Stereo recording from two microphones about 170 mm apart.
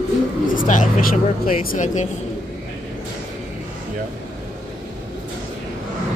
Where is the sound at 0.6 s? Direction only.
50° left (ahead or behind).